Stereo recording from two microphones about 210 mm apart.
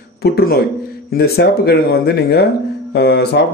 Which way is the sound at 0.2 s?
50° left (ahead or behind).